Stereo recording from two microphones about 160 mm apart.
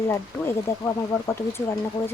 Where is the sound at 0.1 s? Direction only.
15° left (ahead or behind).